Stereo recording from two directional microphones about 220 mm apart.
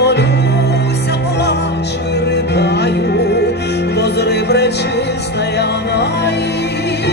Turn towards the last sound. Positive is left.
turn(degrees=50)  # may be behind; listen again after turning